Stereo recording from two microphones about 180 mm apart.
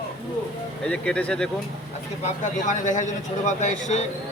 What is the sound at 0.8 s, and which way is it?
Speech, 5° left (ahead or behind).